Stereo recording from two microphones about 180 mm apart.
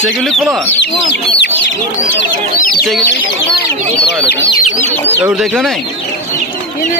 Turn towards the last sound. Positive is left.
turn(degrees=0)  # may be behind; listen again after turning